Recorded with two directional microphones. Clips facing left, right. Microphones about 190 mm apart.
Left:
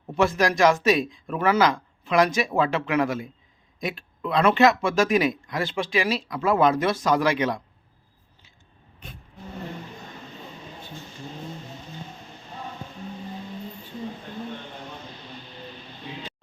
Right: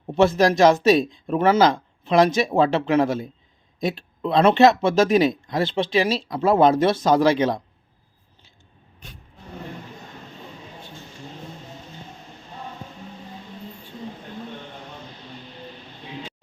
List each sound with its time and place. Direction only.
0.1 s speech: 25° right (ahead or behind)